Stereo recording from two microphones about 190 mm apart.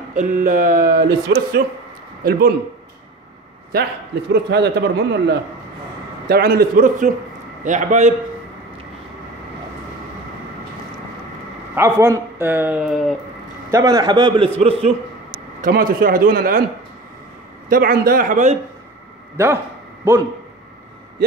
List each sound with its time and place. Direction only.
0.1 s speech: 40° right (ahead or behind)
4.3 s a man's voice: 60° right (ahead or behind); by 8.1 s 40° right (ahead or behind)
11.7 s a man's voice: 15° right (ahead or behind)
13.7 s a man's voice: 20° right (ahead or behind)
14.6 s a sound: 30° right (ahead or behind)
15.6 s speech: 45° right (ahead or behind)
17.6 s speech: 50° right (ahead or behind)
19.3 s speech: 15° right (ahead or behind)